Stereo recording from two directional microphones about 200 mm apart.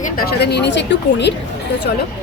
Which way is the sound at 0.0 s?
50° left (ahead or behind).